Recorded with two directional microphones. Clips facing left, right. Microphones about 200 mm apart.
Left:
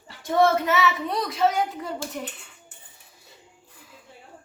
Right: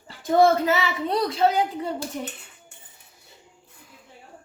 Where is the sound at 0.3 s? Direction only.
30° right (ahead or behind).